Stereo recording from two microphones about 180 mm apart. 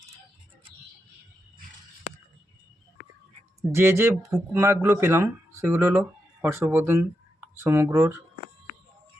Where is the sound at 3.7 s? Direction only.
15° right (ahead or behind).